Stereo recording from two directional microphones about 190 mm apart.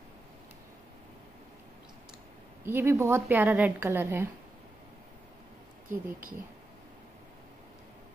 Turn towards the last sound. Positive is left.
turn(degrees=-45)  # may be behind; listen again after turning